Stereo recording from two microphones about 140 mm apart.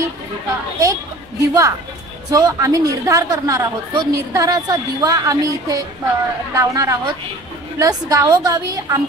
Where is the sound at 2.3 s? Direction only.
25° right (ahead or behind).